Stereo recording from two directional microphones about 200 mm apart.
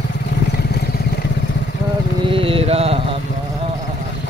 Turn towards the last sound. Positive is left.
turn(degrees=-30)  # may be behind; listen again after turning